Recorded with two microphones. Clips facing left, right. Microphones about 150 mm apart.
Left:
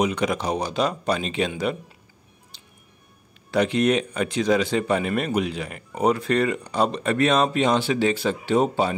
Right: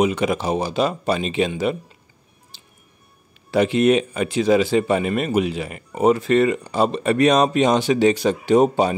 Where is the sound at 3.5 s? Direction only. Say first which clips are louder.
Right 4 dB; 5° right (ahead or behind).